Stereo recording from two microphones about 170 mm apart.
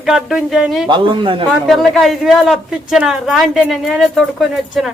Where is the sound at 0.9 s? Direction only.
30° right (ahead or behind).